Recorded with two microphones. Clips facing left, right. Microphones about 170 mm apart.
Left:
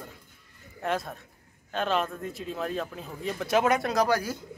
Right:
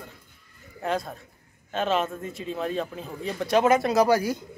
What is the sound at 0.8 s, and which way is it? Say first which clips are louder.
A man's voice: right 2 dB; centre (ahead or behind).